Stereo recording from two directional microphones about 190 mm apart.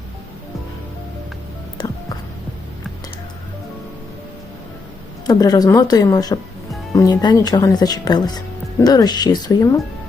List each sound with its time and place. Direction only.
5.2 s speech: 20° left (ahead or behind)